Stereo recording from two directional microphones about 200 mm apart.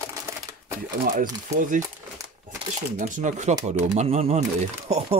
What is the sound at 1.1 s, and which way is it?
Speech, 40° right (ahead or behind).